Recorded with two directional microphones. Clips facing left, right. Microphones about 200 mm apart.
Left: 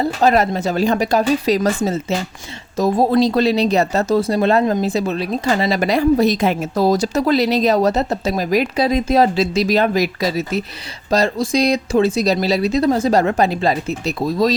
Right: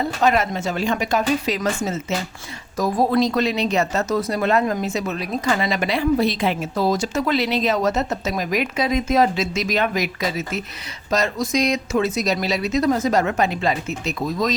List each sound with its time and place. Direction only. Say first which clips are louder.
0.0 s speech: left 4 dB; 35° left (ahead or behind)